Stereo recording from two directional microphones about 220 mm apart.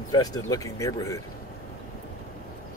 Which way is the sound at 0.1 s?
15° left (ahead or behind).